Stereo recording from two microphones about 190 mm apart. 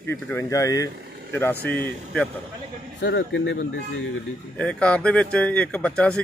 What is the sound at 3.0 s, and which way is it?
Speech, 70° left (ahead or behind).